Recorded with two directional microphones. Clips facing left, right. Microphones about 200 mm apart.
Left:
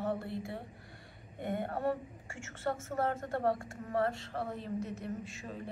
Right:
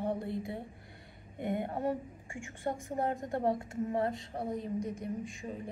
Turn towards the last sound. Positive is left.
turn(degrees=-15)  # may be behind; listen again after turning